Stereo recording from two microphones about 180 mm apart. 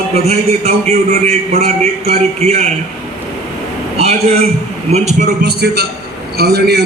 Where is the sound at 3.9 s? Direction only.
35° right (ahead or behind).